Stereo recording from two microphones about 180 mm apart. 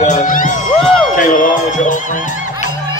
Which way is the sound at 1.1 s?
45° left (ahead or behind).